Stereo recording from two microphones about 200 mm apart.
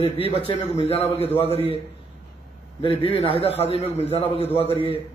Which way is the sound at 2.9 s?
30° right (ahead or behind).